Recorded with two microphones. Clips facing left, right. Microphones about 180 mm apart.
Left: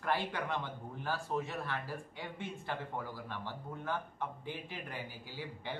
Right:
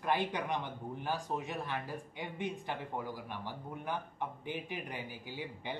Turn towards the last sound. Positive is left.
turn(degrees=-15)  # may be behind; listen again after turning